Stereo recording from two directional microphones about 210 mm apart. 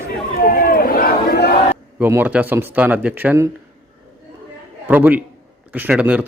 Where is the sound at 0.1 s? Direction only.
45° left (ahead or behind).